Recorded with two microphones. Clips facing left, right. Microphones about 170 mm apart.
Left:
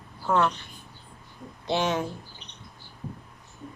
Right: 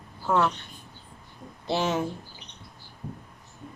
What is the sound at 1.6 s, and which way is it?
Speech, 5° right (ahead or behind).